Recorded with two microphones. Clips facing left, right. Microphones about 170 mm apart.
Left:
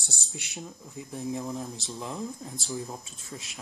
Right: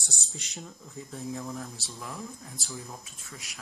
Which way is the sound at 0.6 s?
15° left (ahead or behind).